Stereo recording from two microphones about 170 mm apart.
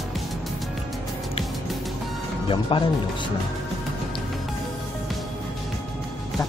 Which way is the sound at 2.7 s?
30° left (ahead or behind).